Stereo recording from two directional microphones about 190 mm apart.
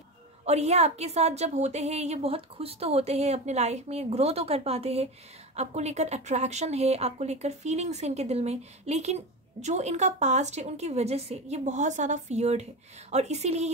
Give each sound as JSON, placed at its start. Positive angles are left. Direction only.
{"t": 0.5, "sound": "speech", "side_deg": -35}